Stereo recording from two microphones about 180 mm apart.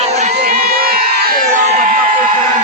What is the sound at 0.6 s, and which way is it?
Crowd, 60° right (ahead or behind).